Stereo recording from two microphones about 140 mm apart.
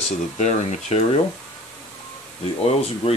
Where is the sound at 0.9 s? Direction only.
50° left (ahead or behind).